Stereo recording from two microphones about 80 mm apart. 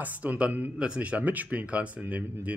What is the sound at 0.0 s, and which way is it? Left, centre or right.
Speech, right.